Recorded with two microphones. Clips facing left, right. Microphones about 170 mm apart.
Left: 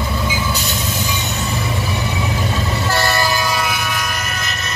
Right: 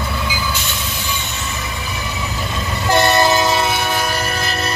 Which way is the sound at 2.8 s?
20° right (ahead or behind).